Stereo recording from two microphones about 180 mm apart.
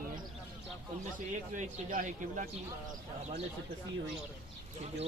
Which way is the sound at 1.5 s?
45° right (ahead or behind).